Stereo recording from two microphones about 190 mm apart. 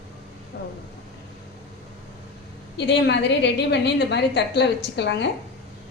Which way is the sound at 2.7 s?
65° left (ahead or behind).